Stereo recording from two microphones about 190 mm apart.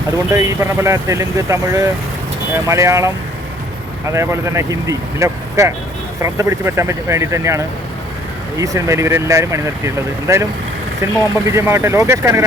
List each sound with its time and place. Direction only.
0.3 s speech: 15° right (ahead or behind)
4.1 s speech: 15° right (ahead or behind)